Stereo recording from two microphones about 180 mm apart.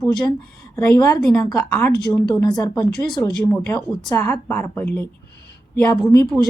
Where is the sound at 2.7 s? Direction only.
5° left (ahead or behind).